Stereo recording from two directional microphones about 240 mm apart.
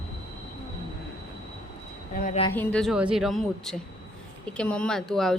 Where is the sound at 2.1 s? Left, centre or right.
Left.